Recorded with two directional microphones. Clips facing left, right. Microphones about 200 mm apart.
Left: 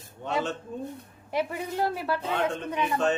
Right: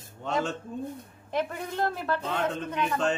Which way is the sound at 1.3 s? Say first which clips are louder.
Left 1 dB; 10° left (ahead or behind).